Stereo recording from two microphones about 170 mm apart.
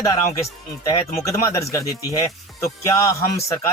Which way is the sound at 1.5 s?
20° left (ahead or behind).